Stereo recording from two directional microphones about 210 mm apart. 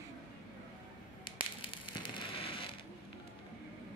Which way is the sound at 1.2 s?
25° left (ahead or behind).